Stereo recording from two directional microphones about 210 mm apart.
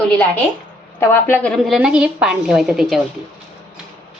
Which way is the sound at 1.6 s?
5° right (ahead or behind).